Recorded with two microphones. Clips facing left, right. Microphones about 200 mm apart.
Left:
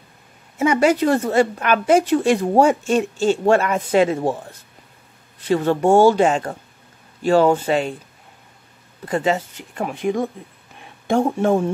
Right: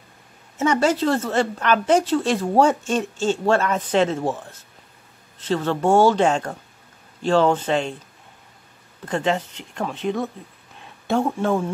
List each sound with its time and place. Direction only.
0.6 s speech: 10° left (ahead or behind)
9.0 s speech: 5° left (ahead or behind)
10.8 s a sound: 15° left (ahead or behind)